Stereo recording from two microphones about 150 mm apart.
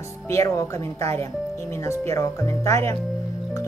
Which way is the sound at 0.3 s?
20° left (ahead or behind).